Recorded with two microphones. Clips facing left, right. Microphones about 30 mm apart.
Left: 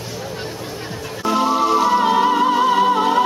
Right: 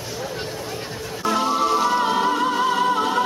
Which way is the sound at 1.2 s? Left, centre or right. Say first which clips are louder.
Left 3 dB; centre.